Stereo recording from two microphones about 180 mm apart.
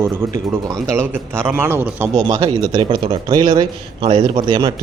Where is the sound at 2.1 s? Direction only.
25° right (ahead or behind).